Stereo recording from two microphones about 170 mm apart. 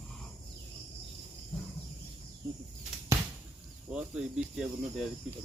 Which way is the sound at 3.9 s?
5° right (ahead or behind).